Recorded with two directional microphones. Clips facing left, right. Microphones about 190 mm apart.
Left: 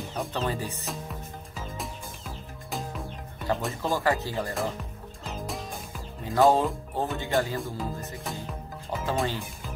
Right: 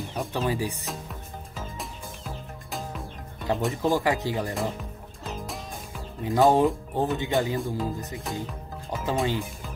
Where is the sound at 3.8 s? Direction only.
15° right (ahead or behind).